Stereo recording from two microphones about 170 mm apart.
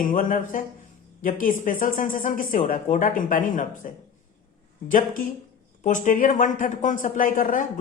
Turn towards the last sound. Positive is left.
turn(degrees=50)  # may be behind; listen again after turning